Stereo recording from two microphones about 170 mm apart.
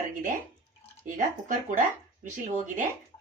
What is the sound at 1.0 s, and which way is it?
Speech, 50° right (ahead or behind).